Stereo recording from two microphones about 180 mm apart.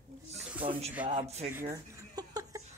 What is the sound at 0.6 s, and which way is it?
Speech, 30° right (ahead or behind).